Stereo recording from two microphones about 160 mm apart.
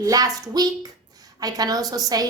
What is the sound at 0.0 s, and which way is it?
Speech, 25° right (ahead or behind).